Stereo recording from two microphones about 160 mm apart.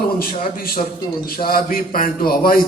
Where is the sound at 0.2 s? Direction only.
65° left (ahead or behind).